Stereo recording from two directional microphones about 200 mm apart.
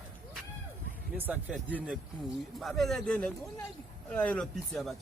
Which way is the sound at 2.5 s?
Centre (ahead or behind).